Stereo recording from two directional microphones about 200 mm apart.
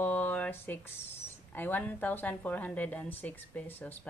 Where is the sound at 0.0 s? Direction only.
10° left (ahead or behind).